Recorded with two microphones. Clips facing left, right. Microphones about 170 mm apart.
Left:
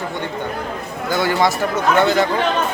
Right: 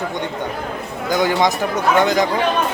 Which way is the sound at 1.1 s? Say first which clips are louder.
Right 1 dB; 15° right (ahead or behind).